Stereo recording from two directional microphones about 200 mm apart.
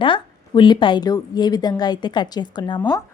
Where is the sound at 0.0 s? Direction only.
25° left (ahead or behind).